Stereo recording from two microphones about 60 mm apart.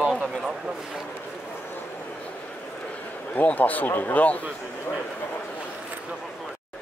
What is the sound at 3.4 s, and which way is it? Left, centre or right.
Speech, left.